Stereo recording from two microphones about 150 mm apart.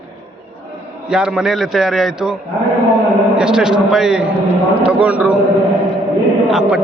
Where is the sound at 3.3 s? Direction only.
5° right (ahead or behind).